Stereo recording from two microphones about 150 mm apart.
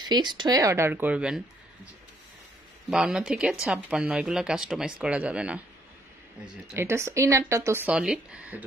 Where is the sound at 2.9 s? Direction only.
5° right (ahead or behind).